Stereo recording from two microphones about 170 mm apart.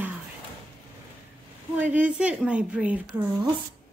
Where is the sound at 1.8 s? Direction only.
10° right (ahead or behind).